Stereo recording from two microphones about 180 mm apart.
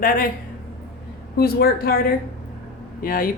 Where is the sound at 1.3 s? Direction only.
55° left (ahead or behind).